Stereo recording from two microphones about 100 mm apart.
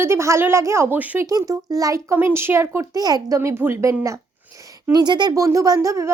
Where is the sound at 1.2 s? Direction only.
35° right (ahead or behind).